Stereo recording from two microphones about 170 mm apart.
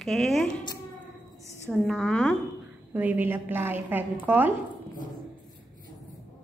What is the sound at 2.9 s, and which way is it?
A woman's voice, 10° right (ahead or behind).